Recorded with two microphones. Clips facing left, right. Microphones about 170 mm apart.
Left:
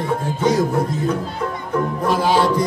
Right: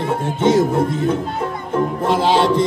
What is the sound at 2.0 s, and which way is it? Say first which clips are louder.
Music: right 1 dB; 25° right (ahead or behind).